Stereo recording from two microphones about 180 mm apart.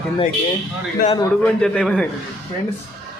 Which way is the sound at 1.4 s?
5° left (ahead or behind).